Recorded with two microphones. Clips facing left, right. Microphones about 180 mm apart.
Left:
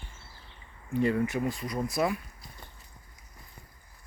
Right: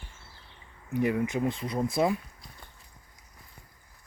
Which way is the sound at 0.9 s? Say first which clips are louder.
Even; 15° right (ahead or behind).